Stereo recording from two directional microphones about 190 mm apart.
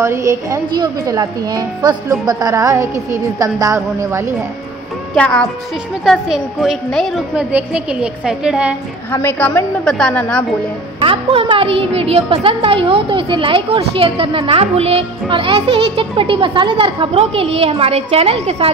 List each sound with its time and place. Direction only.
0.0 s a woman's voice: 15° right (ahead or behind)
5.1 s a woman's voice: 5° left (ahead or behind)
9.1 s a woman's voice: 10° left (ahead or behind)
11.0 s a woman's voice: 25° right (ahead or behind)